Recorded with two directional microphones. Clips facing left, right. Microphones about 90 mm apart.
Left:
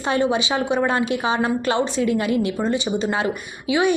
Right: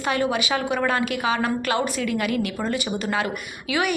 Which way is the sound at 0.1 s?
25° left (ahead or behind).